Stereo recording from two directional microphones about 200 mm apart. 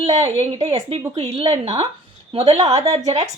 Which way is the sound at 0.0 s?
35° right (ahead or behind).